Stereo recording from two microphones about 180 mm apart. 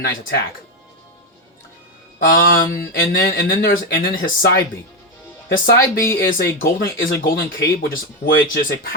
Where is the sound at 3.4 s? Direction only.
50° left (ahead or behind).